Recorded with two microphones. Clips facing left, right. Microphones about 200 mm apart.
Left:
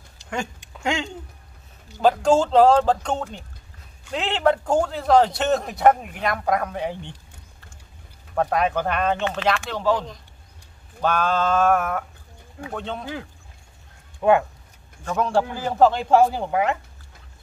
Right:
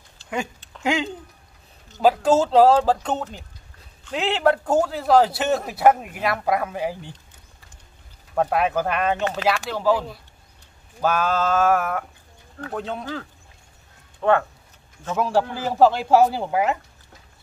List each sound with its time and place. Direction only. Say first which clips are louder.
0.2 s a sound: even; 15° left (ahead or behind)
0.8 s a man's voice: right 2 dB; 5° right (ahead or behind)
8.4 s a man's voice: right 1 dB; 5° right (ahead or behind)
14.2 s speech: left 2 dB; 15° left (ahead or behind)
15.0 s a man's voice: even; 5° right (ahead or behind)